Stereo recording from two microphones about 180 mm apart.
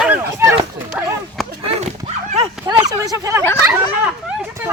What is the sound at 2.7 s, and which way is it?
Speech, 20° right (ahead or behind).